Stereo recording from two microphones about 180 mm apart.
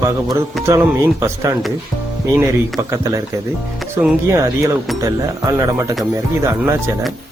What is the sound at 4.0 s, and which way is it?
Speech, 10° right (ahead or behind).